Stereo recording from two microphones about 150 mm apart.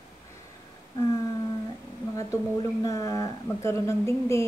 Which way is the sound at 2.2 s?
20° left (ahead or behind).